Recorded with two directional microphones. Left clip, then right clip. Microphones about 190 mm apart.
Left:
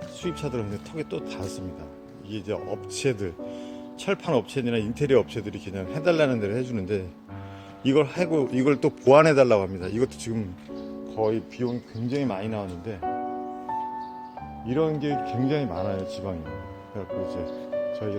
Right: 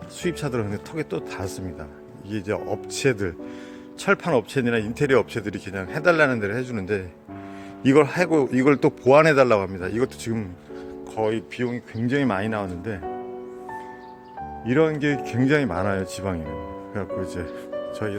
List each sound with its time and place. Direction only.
0.3 s speech: 20° right (ahead or behind)
2.6 s speech: 20° right (ahead or behind)
11.2 s speech: 30° right (ahead or behind)
12.0 s speech: 20° right (ahead or behind)
14.7 s speech: 30° right (ahead or behind)